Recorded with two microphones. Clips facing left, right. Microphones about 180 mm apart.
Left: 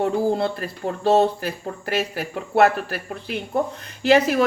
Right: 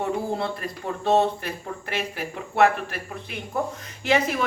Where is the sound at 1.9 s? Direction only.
40° left (ahead or behind).